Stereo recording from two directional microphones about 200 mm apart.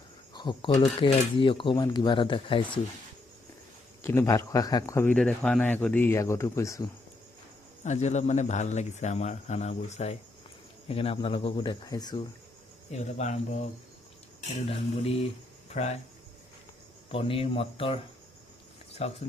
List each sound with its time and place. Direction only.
0.3 s speech: 20° left (ahead or behind)
4.0 s speech: 15° left (ahead or behind)
7.9 s speech: 35° left (ahead or behind); by 12.2 s 20° left (ahead or behind)
12.9 s speech: 35° left (ahead or behind)
17.1 s speech: 30° left (ahead or behind)